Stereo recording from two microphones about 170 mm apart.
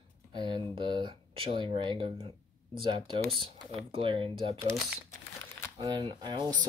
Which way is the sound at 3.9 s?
30° right (ahead or behind).